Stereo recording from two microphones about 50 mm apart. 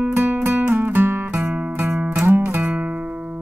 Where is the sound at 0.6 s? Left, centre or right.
Right.